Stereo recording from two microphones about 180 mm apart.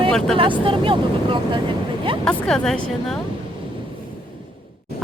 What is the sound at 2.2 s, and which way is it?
Speech, 5° left (ahead or behind).